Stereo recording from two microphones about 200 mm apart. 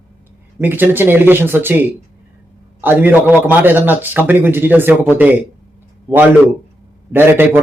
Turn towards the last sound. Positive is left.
turn(degrees=-10)  # may be behind; listen again after turning